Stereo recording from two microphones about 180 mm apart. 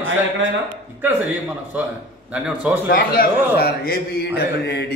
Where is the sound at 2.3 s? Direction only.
10° right (ahead or behind).